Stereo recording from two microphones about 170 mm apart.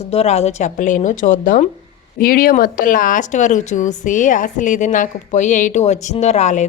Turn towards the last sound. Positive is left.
turn(degrees=45)  # may be behind; listen again after turning